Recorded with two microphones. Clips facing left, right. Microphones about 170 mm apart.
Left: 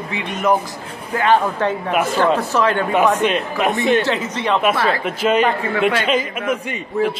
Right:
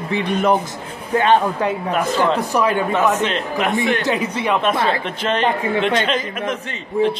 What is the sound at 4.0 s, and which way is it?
Speech, 15° right (ahead or behind).